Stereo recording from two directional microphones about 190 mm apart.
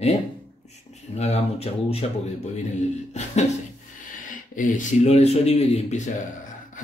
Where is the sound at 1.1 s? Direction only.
35° left (ahead or behind).